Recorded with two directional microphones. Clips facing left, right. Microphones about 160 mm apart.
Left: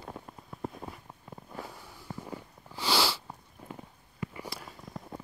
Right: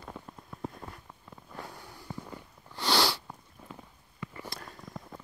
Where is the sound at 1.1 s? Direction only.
25° left (ahead or behind).